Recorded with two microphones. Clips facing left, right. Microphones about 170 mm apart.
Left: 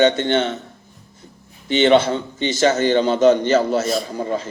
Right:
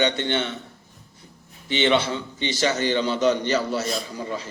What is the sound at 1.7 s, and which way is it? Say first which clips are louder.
A man's voice: left 7 dB; 45° left (ahead or behind).